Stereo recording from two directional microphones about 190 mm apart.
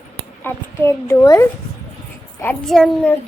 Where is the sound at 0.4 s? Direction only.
15° left (ahead or behind).